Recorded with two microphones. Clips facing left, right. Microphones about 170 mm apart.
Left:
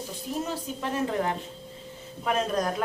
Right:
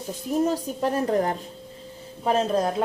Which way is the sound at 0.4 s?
40° right (ahead or behind).